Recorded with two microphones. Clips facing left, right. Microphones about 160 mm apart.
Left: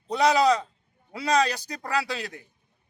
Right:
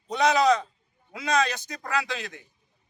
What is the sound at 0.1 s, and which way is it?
A man's voice, 30° left (ahead or behind).